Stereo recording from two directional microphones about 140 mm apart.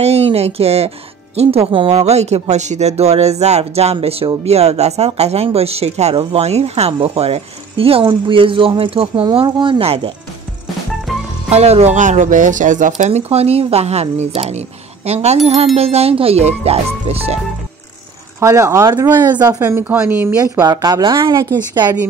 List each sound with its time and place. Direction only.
0.0 s speech: 45° right (ahead or behind)
11.5 s speech: 50° right (ahead or behind)
18.4 s speech: 20° right (ahead or behind)
19.6 s a woman's voice: 15° right (ahead or behind)
20.6 s speech: 30° right (ahead or behind)